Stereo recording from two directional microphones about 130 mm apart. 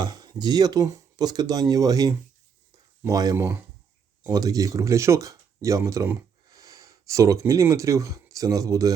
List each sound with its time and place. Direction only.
0.0 s speech: 30° right (ahead or behind)